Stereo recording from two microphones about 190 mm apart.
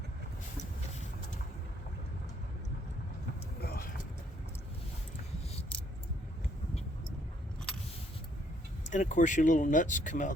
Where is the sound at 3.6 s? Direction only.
55° left (ahead or behind).